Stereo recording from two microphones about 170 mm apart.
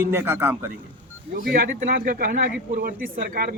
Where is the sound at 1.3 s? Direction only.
55° right (ahead or behind).